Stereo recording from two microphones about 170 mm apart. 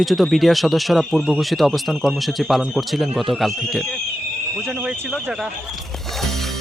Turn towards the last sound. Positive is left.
turn(degrees=0)  # may be behind; listen again after turning